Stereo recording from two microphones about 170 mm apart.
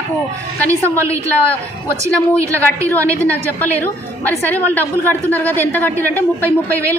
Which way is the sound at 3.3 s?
10° left (ahead or behind).